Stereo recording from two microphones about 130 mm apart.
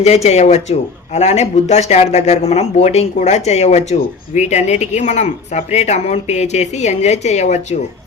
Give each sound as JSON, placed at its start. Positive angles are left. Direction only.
{"t": 0.0, "sound": "speech", "side_deg": 55}